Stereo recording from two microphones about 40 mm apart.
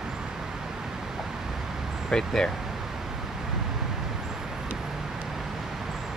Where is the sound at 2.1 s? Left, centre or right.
Centre.